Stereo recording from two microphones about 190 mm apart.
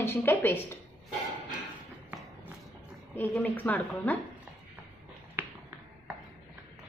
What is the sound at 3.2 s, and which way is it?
A woman's voice, 10° left (ahead or behind).